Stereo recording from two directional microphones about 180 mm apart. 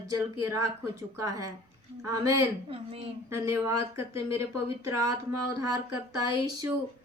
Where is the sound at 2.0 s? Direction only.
20° right (ahead or behind).